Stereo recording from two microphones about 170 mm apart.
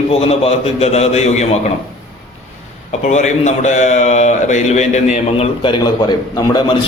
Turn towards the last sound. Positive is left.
turn(degrees=25)  # may be behind; listen again after turning